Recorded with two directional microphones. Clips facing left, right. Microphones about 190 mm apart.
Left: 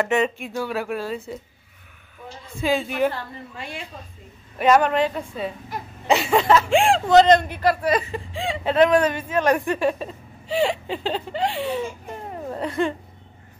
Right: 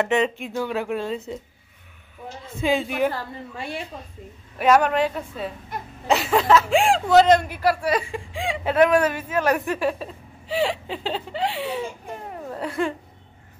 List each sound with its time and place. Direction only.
0.0 s a woman's voice: 20° right (ahead or behind)
2.6 s a woman's voice: 15° right (ahead or behind)
4.6 s a woman's voice: 5° right (ahead or behind)